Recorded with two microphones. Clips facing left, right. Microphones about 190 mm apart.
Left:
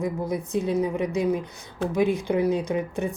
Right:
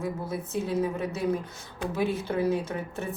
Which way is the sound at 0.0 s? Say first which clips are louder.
Left 5 dB; 15° left (ahead or behind).